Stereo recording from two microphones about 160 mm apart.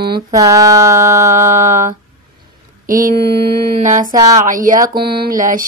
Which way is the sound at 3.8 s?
55° right (ahead or behind).